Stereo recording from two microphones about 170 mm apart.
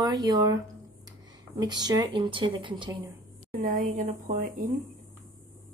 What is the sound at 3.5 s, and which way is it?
A woman's voice, 50° right (ahead or behind).